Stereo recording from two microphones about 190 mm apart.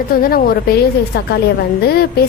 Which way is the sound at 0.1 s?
50° left (ahead or behind).